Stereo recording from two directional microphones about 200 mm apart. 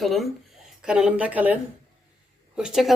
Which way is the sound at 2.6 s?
Centre (ahead or behind).